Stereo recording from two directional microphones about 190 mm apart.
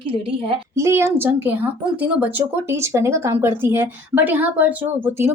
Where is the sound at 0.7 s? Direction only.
15° right (ahead or behind).